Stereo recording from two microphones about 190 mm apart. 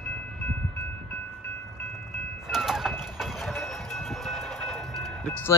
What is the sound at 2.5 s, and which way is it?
Train, centre (ahead or behind).